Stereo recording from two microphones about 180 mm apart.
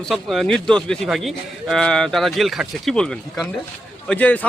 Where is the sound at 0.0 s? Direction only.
Centre (ahead or behind).